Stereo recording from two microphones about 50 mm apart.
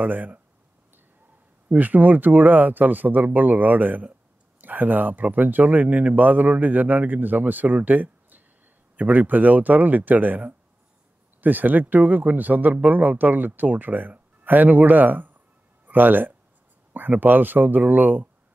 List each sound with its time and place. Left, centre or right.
0.0 s speech: right
1.7 s speech: right
11.4 s speech: right